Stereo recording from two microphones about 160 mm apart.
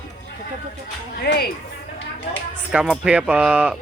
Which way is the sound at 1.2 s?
90° left.